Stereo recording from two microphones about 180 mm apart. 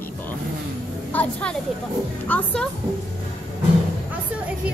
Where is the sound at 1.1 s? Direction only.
5° left (ahead or behind).